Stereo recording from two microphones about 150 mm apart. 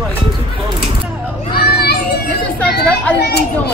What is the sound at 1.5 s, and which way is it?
Children playing, 90° left.